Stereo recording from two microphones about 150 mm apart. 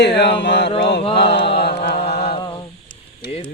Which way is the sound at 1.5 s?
90° left.